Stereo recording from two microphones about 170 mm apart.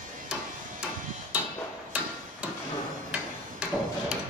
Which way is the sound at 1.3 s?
5° right (ahead or behind).